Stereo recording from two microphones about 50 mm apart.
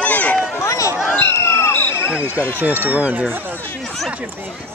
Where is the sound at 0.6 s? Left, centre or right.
Left.